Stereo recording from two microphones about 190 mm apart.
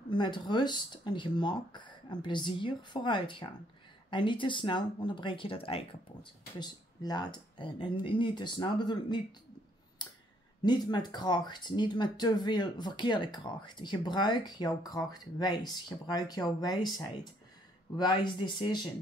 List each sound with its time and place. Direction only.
0.1 s speech: 25° left (ahead or behind)
10.0 s clicking: 20° left (ahead or behind)
10.6 s speech: 20° left (ahead or behind)